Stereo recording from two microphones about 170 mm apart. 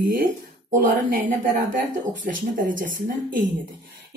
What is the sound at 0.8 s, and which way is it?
Speech, 50° right (ahead or behind).